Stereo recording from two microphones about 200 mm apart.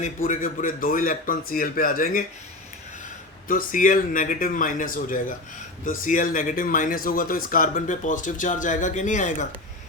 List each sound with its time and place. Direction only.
0.0 s a man's voice: 40° left (ahead or behind)
3.5 s a man's voice: 45° left (ahead or behind)